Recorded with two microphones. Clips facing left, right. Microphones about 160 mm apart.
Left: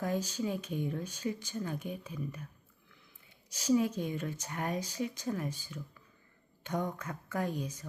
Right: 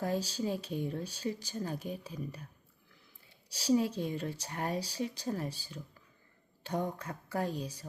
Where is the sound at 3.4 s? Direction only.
35° right (ahead or behind).